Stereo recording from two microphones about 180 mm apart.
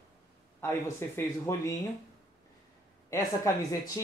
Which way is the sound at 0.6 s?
15° left (ahead or behind).